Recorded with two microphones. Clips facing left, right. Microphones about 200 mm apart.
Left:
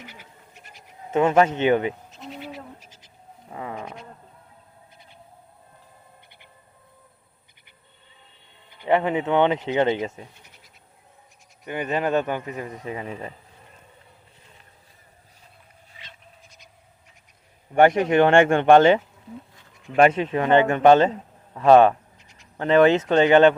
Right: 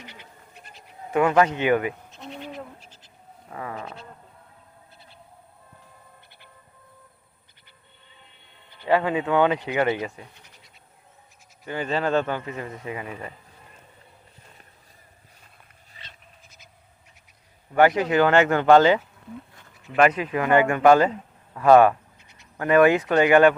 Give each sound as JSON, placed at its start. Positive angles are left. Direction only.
{"t": 0.0, "sound": "goat", "side_deg": 10}
{"t": 1.1, "sound": "speech", "side_deg": 25}
{"t": 2.0, "sound": "bleat", "side_deg": 0}
{"t": 3.5, "sound": "sheep", "side_deg": 15}
{"t": 8.8, "sound": "speech", "side_deg": 20}
{"t": 11.6, "sound": "speech", "side_deg": 20}
{"t": 12.8, "sound": "speech", "side_deg": 30}
{"t": 17.7, "sound": "speech", "side_deg": 25}
{"t": 20.0, "sound": "speech", "side_deg": 25}